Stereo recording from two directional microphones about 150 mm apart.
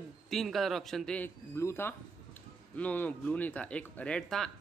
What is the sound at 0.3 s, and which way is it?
Speech, centre (ahead or behind).